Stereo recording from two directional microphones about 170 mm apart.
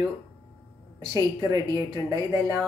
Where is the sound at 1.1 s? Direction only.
20° right (ahead or behind).